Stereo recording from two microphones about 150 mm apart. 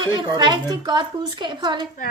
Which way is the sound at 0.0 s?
30° right (ahead or behind).